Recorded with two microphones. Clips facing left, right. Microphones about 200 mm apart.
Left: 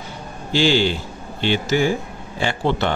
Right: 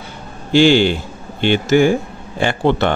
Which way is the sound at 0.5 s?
60° right (ahead or behind).